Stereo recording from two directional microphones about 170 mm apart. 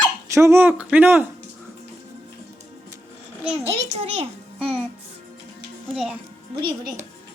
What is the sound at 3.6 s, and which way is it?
Speech, 40° right (ahead or behind).